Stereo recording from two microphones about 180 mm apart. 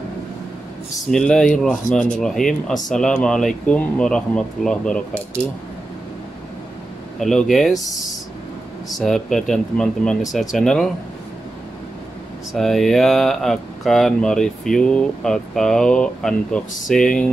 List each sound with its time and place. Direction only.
1.1 s speech: 5° left (ahead or behind)
7.2 s speech: centre (ahead or behind)
7.8 s speech: 20° left (ahead or behind)
8.9 s speech: centre (ahead or behind)
12.5 s speech: centre (ahead or behind)